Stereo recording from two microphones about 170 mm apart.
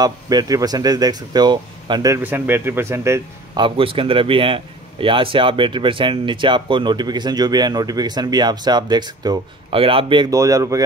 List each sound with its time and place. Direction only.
0.0 s speech: 20° right (ahead or behind)
3.5 s speech: 30° right (ahead or behind)